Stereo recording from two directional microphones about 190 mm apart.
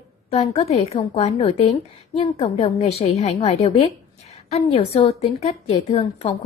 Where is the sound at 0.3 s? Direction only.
30° left (ahead or behind).